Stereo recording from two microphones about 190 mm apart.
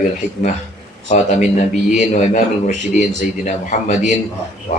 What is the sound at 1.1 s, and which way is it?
Speech, 35° left (ahead or behind).